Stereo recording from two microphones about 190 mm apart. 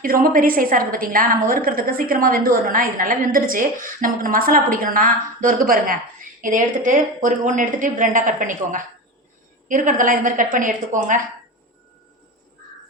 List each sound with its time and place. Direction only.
0.0 s a woman's voice: 50° right (ahead or behind)